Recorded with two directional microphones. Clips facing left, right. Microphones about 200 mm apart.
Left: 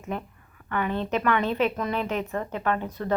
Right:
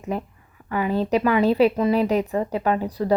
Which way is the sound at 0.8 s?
35° right (ahead or behind).